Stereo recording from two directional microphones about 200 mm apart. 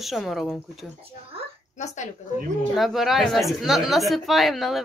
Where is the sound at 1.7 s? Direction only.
35° left (ahead or behind).